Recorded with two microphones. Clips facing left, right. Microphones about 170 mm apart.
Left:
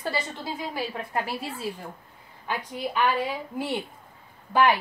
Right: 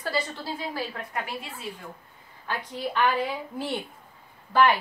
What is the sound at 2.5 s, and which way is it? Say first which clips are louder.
A woman's voice: left 1 dB; 10° left (ahead or behind).